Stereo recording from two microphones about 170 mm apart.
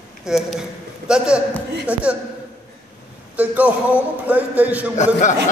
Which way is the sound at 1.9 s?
5° right (ahead or behind).